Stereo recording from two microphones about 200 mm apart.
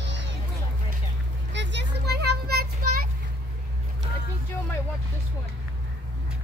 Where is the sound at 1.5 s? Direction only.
60° right (ahead or behind).